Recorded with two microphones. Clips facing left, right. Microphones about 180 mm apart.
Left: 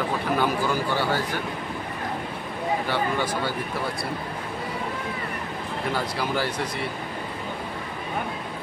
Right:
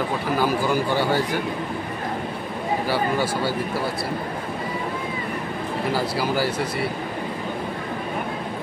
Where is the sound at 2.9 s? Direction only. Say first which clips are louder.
Right 3 dB; 5° right (ahead or behind).